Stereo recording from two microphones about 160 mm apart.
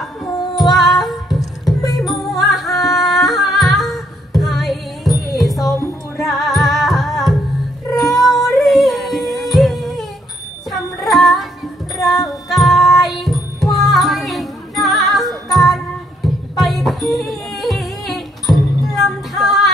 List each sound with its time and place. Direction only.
0.6 s female singing: centre (ahead or behind)
1.9 s music: centre (ahead or behind)